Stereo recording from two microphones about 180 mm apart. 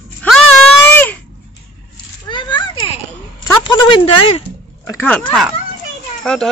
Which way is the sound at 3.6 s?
25° left (ahead or behind).